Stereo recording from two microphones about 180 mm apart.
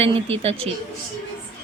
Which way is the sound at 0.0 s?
30° right (ahead or behind).